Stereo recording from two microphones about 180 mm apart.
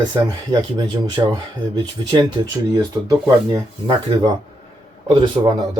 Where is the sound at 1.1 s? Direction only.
25° right (ahead or behind).